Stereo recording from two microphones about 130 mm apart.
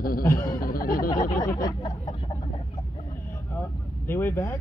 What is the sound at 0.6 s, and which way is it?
Speech, 90° left.